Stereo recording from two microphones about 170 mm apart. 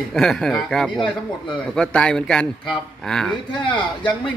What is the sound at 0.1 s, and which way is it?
Speech, 5° left (ahead or behind).